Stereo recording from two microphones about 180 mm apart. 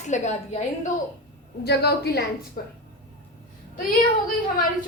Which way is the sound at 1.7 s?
65° left (ahead or behind).